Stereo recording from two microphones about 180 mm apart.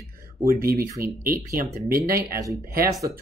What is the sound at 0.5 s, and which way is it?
Speech, 55° right (ahead or behind).